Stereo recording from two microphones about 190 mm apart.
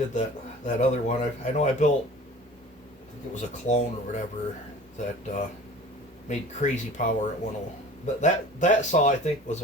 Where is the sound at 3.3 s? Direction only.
40° left (ahead or behind).